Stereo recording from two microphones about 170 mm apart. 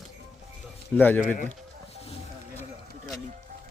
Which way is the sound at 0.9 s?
10° left (ahead or behind).